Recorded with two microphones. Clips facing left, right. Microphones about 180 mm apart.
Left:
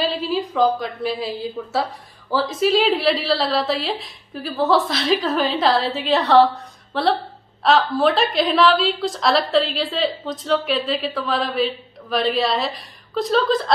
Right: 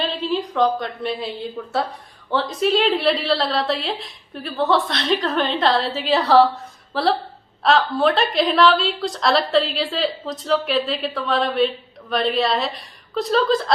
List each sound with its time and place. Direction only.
0.0 s a woman's voice: centre (ahead or behind)